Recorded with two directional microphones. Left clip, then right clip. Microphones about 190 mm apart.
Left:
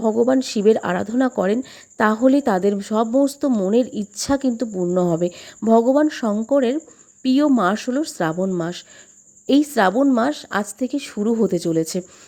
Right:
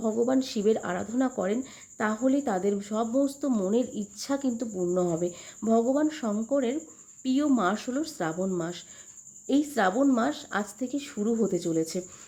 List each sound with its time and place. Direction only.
0.0 s a woman's voice: 40° left (ahead or behind)